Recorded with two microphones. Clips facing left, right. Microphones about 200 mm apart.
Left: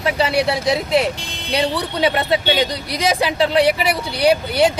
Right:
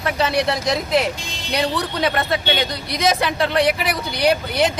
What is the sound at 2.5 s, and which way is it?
Speech, 30° left (ahead or behind).